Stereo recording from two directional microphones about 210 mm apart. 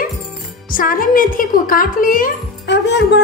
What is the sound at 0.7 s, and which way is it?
A woman's voice, 40° left (ahead or behind).